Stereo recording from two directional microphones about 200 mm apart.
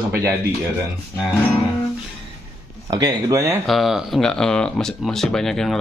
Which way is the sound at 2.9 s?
15° right (ahead or behind).